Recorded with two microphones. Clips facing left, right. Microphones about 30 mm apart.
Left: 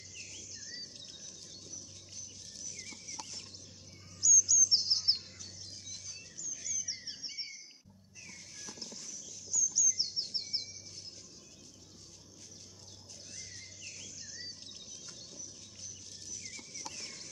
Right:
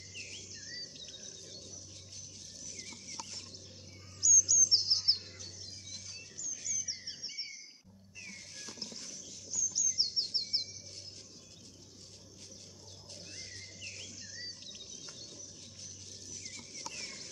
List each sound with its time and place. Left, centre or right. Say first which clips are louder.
0.1 s bird: right 3 dB; right
4.2 s bird: even; centre
6.6 s music: even; centre
9.5 s chirp: left 3 dB; right
13.3 s bird: even; right
16.5 s rodents: even; right